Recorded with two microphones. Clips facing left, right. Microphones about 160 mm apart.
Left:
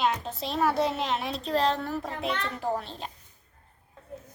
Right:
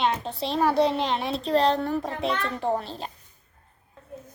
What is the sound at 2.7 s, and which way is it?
Speech, centre (ahead or behind).